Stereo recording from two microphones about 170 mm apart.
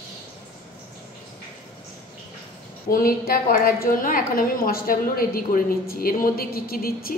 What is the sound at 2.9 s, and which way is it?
A woman's voice, 60° left (ahead or behind).